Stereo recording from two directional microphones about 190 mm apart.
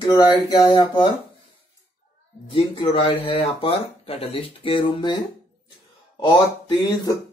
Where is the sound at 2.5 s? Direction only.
25° left (ahead or behind).